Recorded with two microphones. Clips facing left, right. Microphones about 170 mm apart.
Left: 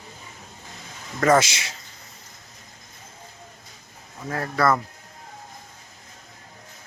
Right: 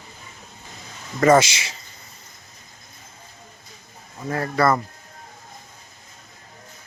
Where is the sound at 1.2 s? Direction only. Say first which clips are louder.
Right 3 dB; centre (ahead or behind).